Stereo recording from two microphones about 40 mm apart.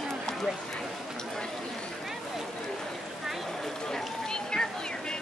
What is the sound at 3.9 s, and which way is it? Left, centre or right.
Run, centre.